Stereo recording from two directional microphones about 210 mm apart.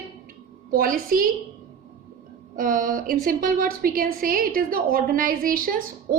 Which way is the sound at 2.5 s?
40° right (ahead or behind).